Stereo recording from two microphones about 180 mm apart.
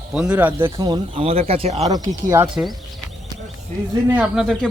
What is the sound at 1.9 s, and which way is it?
Speech, 20° right (ahead or behind).